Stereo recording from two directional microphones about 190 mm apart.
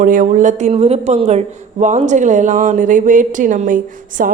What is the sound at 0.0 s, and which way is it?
A woman's voice, 45° right (ahead or behind).